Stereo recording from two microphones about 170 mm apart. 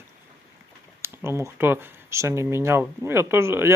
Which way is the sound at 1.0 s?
15° right (ahead or behind).